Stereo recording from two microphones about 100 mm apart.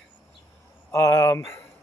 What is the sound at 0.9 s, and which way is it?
Speech, 30° left (ahead or behind).